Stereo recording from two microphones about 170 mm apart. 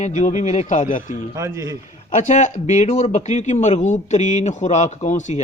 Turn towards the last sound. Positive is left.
turn(degrees=45)  # may be behind; listen again after turning